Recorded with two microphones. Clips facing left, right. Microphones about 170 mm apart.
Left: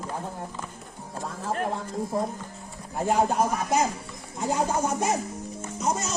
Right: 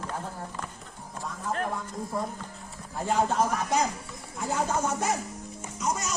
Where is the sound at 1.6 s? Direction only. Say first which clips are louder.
Left 3 dB; 25° left (ahead or behind).